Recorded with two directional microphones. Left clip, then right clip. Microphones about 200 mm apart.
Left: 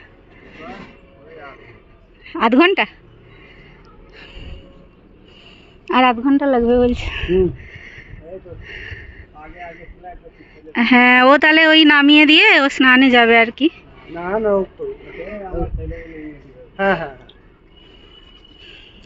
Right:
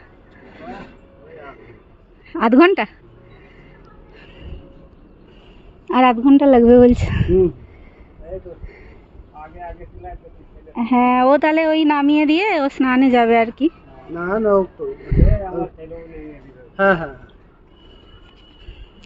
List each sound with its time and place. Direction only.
1.3 s vehicle: 20° right (ahead or behind)
2.3 s a woman's voice: 15° right (ahead or behind)
5.9 s speech: 15° right (ahead or behind); by 7.2 s 30° right (ahead or behind)
7.2 s a woman's voice: 15° right (ahead or behind)
8.6 s speech: 5° right (ahead or behind)
10.8 s speech: 5° left (ahead or behind)
14.2 s speech: 55° right (ahead or behind)
15.9 s a woman's voice: 5° right (ahead or behind)
16.7 s a man's voice: 65° right (ahead or behind)